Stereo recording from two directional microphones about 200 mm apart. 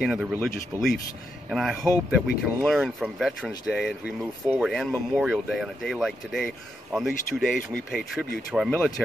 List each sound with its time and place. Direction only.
0.0 s speech: 5° right (ahead or behind)